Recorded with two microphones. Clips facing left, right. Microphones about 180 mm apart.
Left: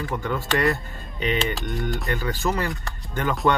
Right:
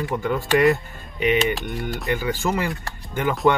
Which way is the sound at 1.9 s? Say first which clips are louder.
Right 3 dB; centre (ahead or behind).